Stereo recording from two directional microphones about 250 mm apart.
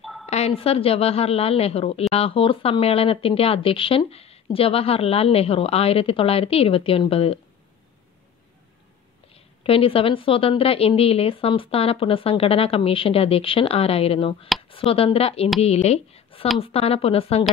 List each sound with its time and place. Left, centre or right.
0.0 s a sound: centre
0.3 s a woman's voice: left
9.3 s a woman's voice: left